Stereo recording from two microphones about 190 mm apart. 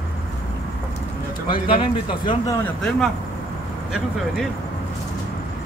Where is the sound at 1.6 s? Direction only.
25° left (ahead or behind).